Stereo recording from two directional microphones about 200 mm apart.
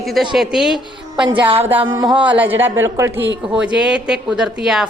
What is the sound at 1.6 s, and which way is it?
Speech, 10° right (ahead or behind).